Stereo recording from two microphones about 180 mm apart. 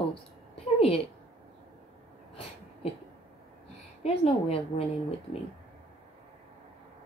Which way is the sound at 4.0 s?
35° left (ahead or behind).